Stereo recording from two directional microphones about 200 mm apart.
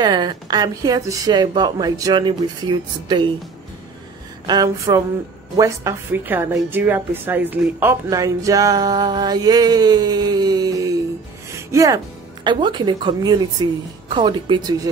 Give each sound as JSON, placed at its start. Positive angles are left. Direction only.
{"t": 0.0, "sound": "speech", "side_deg": -20}
{"t": 4.5, "sound": "a woman's voice", "side_deg": -15}
{"t": 11.5, "sound": "music", "side_deg": -15}
{"t": 12.4, "sound": "speech", "side_deg": -25}